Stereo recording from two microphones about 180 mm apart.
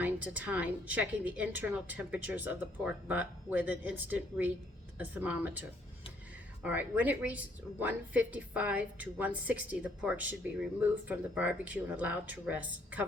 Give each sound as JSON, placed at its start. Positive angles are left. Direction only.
{"t": 0.0, "sound": "a woman's voice", "side_deg": -10}